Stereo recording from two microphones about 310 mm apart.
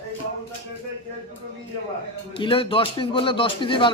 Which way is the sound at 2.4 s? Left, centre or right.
Centre.